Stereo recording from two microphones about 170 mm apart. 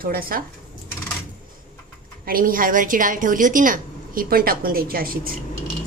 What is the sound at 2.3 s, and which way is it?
A woman's voice, 55° right (ahead or behind).